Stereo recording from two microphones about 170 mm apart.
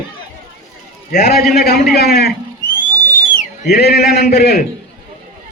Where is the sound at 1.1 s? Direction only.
60° left (ahead or behind).